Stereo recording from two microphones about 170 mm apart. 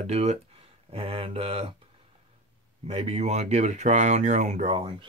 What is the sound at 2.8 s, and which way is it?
Speech, 40° right (ahead or behind).